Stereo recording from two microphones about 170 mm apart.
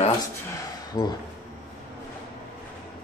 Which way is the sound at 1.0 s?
55° left (ahead or behind).